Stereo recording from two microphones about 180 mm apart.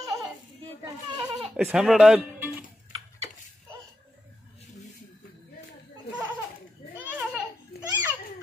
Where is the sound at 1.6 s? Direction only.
5° right (ahead or behind).